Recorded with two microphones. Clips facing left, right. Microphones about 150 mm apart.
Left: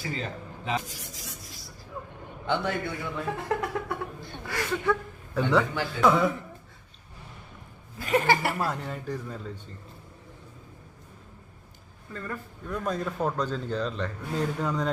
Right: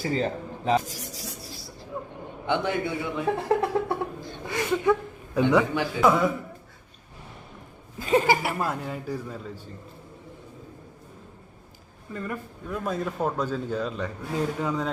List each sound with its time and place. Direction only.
0.0 s a sound: 35° right (ahead or behind)
2.5 s a man's voice: 15° right (ahead or behind)
3.3 s a man's voice: 30° right (ahead or behind); by 6.3 s 5° right (ahead or behind)
7.9 s speech: 25° right (ahead or behind)
8.3 s speech: 5° right (ahead or behind)
12.1 s a man's voice: 15° right (ahead or behind)